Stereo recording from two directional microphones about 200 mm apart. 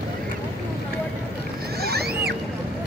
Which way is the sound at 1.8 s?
50° right (ahead or behind).